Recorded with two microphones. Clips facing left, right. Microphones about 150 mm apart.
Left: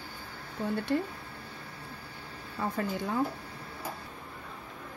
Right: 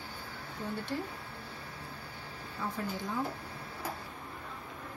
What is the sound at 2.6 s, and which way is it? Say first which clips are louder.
Speech: left 4 dB; 65° left (ahead or behind).